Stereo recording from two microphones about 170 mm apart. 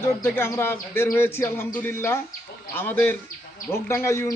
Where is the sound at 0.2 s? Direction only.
15° left (ahead or behind).